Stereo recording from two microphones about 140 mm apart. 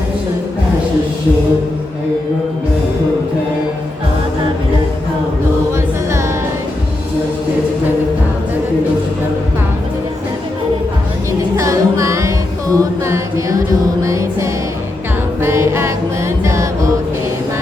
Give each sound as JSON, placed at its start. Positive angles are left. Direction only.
{"t": 5.7, "sound": "music", "side_deg": -20}
{"t": 11.5, "sound": "music", "side_deg": -20}